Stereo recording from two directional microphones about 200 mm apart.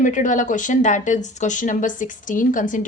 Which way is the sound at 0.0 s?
40° left (ahead or behind).